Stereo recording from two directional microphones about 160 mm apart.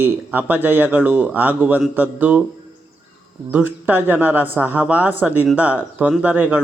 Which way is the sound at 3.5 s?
10° right (ahead or behind).